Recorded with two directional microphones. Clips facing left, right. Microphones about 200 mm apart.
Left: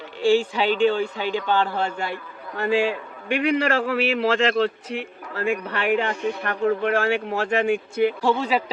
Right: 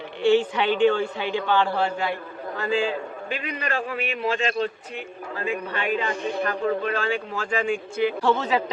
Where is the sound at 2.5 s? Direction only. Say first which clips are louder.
Left 3 dB; 65° left (ahead or behind).